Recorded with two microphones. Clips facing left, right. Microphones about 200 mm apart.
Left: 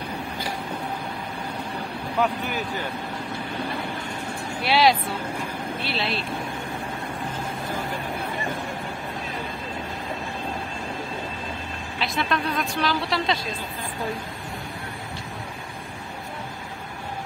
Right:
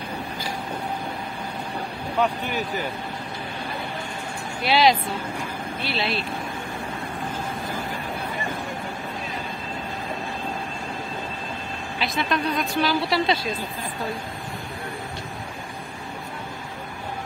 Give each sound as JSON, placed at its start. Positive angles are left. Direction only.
{"t": 4.6, "sound": "a woman's voice", "side_deg": 0}
{"t": 12.0, "sound": "a woman's voice", "side_deg": 0}